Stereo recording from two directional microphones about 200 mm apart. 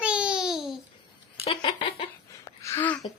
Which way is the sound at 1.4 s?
25° left (ahead or behind).